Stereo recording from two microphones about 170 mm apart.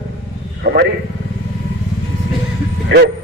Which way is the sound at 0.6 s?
70° right (ahead or behind).